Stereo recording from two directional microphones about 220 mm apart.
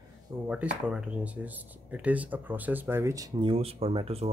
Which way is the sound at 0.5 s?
5° right (ahead or behind).